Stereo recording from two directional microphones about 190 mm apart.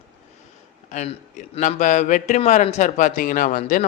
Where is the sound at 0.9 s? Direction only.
40° left (ahead or behind).